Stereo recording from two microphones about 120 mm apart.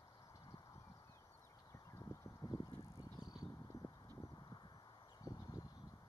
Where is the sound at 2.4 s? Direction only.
35° left (ahead or behind).